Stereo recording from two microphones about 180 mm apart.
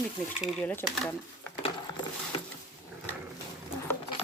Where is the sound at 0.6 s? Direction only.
10° left (ahead or behind).